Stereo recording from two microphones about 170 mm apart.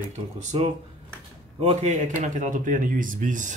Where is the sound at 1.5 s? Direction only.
40° right (ahead or behind).